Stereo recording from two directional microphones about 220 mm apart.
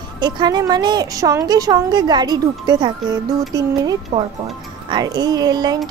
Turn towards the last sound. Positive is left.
turn(degrees=-20)  # may be behind; listen again after turning